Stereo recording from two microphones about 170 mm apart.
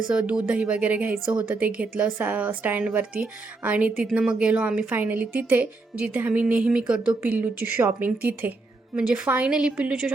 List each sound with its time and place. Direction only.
0.1 s speech: 5° right (ahead or behind)